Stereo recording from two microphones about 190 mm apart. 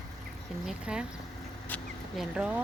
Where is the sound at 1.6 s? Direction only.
10° left (ahead or behind).